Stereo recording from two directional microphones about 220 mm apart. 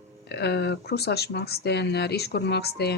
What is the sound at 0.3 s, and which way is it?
Speech, 50° left (ahead or behind).